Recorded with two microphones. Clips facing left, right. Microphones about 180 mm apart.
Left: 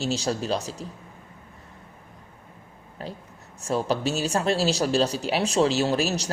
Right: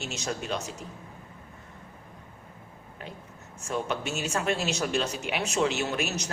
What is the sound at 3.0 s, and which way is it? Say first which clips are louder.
Speech: left 6 dB; 35° left (ahead or behind).